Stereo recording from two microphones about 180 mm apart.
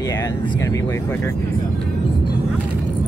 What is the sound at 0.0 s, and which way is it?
Speech, 20° left (ahead or behind).